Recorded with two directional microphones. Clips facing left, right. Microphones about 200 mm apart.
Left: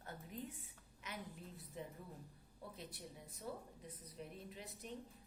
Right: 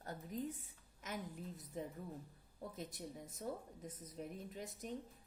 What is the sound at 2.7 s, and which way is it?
A woman's voice, 45° right (ahead or behind).